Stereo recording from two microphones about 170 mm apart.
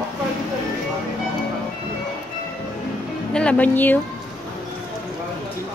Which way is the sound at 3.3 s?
5° left (ahead or behind).